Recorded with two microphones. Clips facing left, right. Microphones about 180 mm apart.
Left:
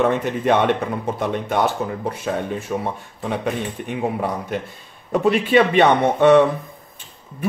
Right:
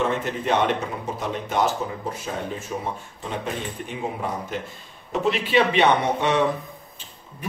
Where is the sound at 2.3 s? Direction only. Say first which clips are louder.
Left 8 dB; 65° left (ahead or behind).